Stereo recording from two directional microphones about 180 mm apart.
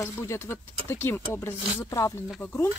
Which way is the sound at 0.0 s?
15° left (ahead or behind).